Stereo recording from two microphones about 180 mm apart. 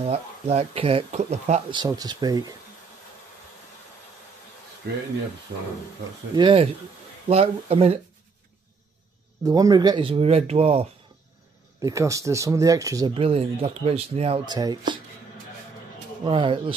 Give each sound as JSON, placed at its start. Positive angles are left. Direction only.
{"t": 0.0, "sound": "speech", "side_deg": -35}
{"t": 1.7, "sound": "speech", "side_deg": -25}
{"t": 6.3, "sound": "speech", "side_deg": -30}
{"t": 9.4, "sound": "speech", "side_deg": -20}
{"t": 11.8, "sound": "speech", "side_deg": -15}
{"t": 13.1, "sound": "speech", "side_deg": -30}
{"t": 16.3, "sound": "speech", "side_deg": -30}